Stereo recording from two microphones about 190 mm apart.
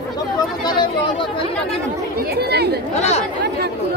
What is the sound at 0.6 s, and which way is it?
Speech, 25° left (ahead or behind).